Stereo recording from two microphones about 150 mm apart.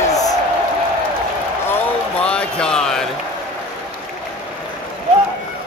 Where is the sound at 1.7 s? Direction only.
10° left (ahead or behind).